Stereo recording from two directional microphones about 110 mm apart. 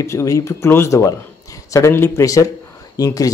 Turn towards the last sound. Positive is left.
turn(degrees=30)  # may be behind; listen again after turning